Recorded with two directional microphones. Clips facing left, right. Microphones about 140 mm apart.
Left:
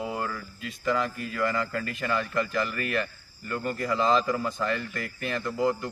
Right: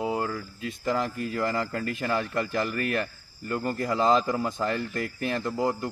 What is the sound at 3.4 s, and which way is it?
Speech, 35° right (ahead or behind).